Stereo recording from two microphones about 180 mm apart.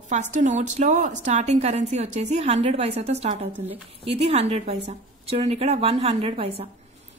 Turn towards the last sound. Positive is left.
turn(degrees=-30)  # may be behind; listen again after turning